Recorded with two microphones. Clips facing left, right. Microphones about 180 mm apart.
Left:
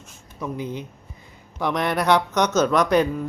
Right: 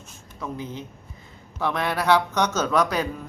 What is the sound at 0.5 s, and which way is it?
Speech, 15° left (ahead or behind).